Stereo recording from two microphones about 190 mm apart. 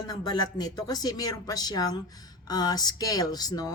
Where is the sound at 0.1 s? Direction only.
20° left (ahead or behind).